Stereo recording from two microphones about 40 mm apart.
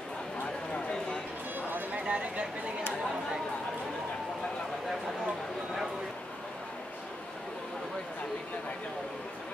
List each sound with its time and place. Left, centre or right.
2.0 s speech: right